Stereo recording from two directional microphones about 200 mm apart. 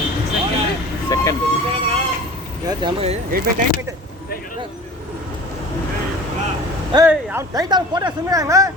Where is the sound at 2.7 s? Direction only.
25° right (ahead or behind).